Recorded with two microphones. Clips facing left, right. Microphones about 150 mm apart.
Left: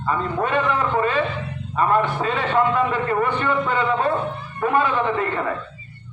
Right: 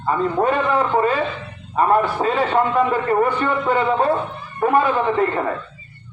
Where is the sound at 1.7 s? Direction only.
30° right (ahead or behind).